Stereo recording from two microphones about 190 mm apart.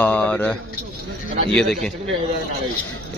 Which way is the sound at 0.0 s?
10° left (ahead or behind).